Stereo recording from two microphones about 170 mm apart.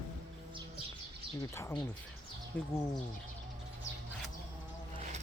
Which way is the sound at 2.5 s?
5° left (ahead or behind).